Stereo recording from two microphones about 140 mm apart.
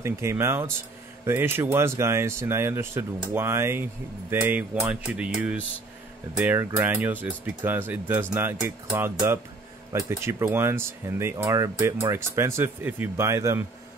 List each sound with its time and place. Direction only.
0.0 s speech: 20° right (ahead or behind)